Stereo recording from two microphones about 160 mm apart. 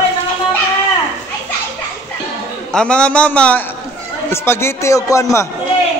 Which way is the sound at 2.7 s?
5° left (ahead or behind).